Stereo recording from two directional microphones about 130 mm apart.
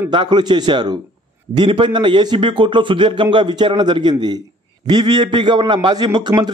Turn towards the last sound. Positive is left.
turn(degrees=-35)  # may be behind; listen again after turning